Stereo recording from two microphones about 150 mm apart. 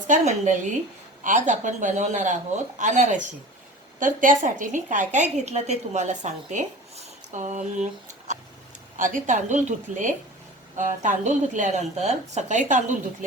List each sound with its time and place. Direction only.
0.1 s a woman's voice: 55° right (ahead or behind)
9.0 s speech: 60° right (ahead or behind)